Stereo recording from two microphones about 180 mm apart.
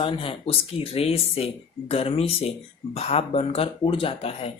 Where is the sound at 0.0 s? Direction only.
30° left (ahead or behind).